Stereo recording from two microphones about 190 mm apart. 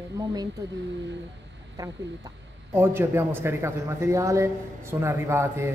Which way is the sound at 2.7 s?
10° right (ahead or behind).